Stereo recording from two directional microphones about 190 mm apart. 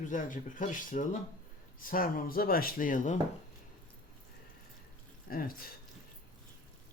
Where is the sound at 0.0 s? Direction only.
45° left (ahead or behind).